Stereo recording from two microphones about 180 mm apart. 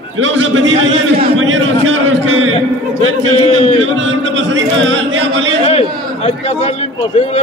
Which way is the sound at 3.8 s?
90° right.